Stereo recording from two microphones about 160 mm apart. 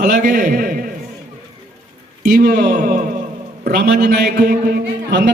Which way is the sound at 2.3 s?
80° right.